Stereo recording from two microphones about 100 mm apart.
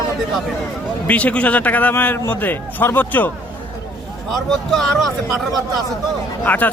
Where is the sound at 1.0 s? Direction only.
15° left (ahead or behind).